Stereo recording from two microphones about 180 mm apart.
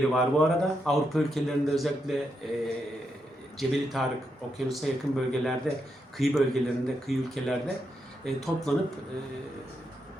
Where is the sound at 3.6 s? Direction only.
Centre (ahead or behind).